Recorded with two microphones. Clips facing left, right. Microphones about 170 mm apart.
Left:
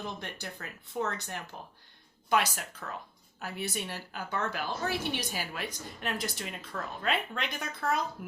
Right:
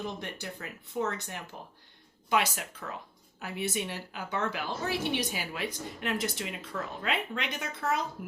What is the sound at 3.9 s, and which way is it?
A woman's voice, 20° right (ahead or behind).